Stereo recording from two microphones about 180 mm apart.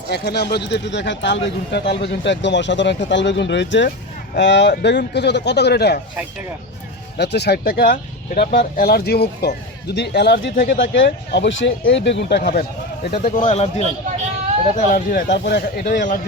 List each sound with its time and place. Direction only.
0.1 s speech: 70° left (ahead or behind)
7.2 s speech: 70° left (ahead or behind)
10.7 s speech: 90° left
12.4 s speech: 55° left (ahead or behind)
13.4 s a man's voice: 35° left (ahead or behind)
15.3 s speech: 70° left (ahead or behind)